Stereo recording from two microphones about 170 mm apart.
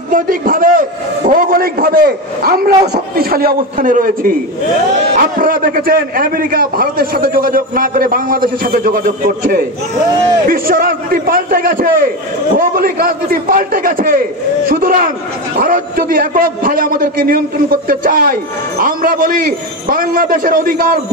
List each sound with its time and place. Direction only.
0.1 s a man's voice: 55° right (ahead or behind)